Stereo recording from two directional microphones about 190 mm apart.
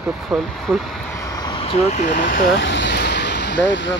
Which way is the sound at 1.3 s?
25° left (ahead or behind).